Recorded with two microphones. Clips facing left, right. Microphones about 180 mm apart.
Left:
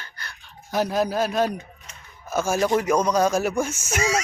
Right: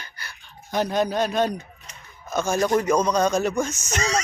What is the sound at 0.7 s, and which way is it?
Speech, 5° left (ahead or behind).